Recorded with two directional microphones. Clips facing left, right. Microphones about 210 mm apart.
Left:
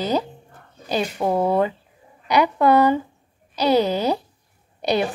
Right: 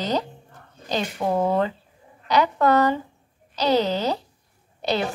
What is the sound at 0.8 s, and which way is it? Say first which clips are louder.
A woman's voice: left 3 dB; 10° left (ahead or behind).